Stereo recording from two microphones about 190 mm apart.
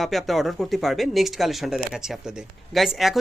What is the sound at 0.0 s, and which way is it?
Speech, centre (ahead or behind).